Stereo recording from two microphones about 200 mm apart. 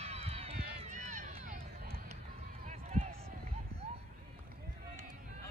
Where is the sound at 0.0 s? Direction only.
30° right (ahead or behind).